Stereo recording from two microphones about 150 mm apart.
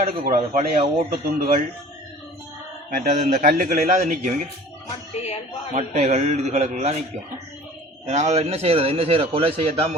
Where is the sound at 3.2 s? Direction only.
55° right (ahead or behind).